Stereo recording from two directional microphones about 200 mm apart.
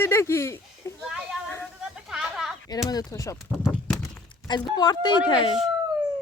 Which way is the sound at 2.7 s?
20° left (ahead or behind).